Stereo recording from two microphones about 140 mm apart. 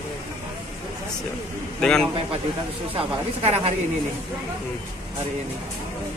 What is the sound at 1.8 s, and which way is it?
Speech, 5° left (ahead or behind).